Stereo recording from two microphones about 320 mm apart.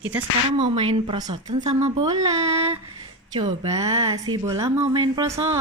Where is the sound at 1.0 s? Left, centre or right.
Centre.